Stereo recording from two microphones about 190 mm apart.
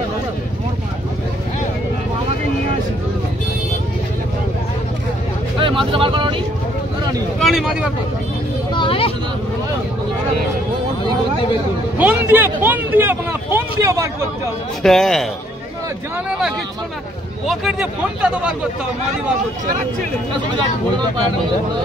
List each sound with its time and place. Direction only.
5.6 s vehicle: 25° right (ahead or behind)
7.3 s a sound: centre (ahead or behind)
8.7 s vehicle: 30° left (ahead or behind)
12.0 s speech: 10° right (ahead or behind)
14.8 s speech: centre (ahead or behind)
16.3 s speech: 5° right (ahead or behind)